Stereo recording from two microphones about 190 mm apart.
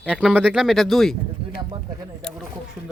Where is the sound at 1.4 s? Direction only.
30° right (ahead or behind).